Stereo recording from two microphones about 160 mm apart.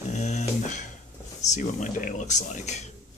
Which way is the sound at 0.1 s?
45° left (ahead or behind).